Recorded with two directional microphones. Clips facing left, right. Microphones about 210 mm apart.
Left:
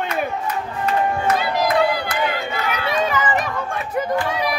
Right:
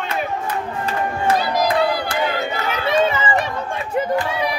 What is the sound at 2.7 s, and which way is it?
Run, 25° right (ahead or behind).